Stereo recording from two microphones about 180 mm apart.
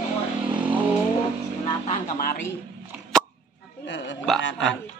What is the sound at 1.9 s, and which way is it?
Speech, 50° left (ahead or behind).